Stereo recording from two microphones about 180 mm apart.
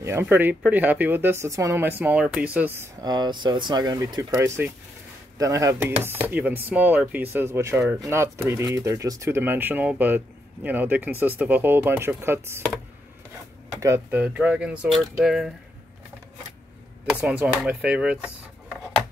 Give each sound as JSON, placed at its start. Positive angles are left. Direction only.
{"t": 0.0, "sound": "speech", "side_deg": -15}
{"t": 3.0, "sound": "speech", "side_deg": -25}
{"t": 13.7, "sound": "speech", "side_deg": -15}
{"t": 17.0, "sound": "speech", "side_deg": -5}